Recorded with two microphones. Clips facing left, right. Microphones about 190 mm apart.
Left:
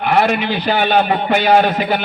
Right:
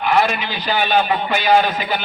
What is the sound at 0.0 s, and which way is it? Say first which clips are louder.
A man's voice: left 3 dB; 60° left (ahead or behind).